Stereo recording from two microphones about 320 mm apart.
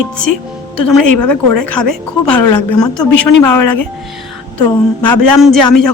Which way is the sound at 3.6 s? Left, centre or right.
Left.